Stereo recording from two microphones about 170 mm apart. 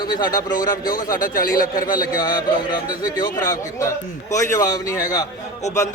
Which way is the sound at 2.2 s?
25° left (ahead or behind).